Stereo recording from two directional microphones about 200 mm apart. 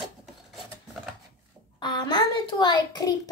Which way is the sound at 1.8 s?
20° left (ahead or behind).